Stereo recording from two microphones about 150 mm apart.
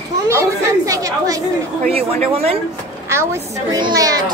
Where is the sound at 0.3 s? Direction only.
20° right (ahead or behind).